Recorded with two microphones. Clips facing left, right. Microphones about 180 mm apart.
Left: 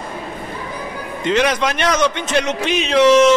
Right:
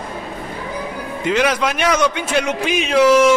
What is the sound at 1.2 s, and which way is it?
A man's voice, 5° right (ahead or behind).